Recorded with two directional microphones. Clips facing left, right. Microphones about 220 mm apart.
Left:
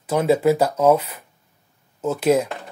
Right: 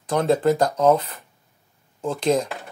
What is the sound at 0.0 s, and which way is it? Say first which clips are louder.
Speech: left 2 dB; 5° left (ahead or behind).